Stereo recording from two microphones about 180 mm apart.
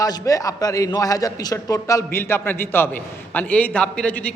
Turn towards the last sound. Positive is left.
turn(degrees=5)  # may be behind; listen again after turning